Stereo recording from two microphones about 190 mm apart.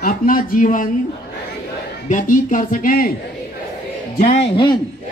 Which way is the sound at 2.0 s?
45° left (ahead or behind).